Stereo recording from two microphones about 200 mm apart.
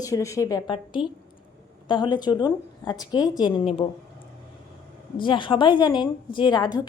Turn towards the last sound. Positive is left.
turn(degrees=20)  # may be behind; listen again after turning